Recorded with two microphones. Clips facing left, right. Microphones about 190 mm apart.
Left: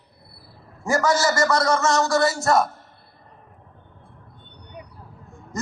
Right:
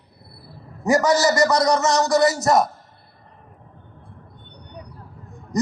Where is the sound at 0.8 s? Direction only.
20° right (ahead or behind).